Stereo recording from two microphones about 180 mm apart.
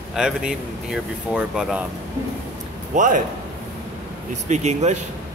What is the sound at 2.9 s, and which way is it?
Speech, 45° right (ahead or behind).